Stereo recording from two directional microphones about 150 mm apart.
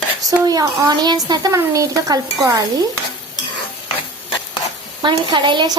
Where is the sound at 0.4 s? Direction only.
25° right (ahead or behind).